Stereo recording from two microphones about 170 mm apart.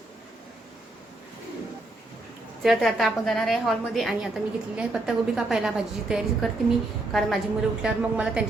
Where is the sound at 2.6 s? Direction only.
Centre (ahead or behind).